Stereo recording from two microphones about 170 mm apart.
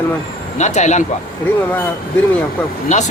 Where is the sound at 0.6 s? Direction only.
45° left (ahead or behind).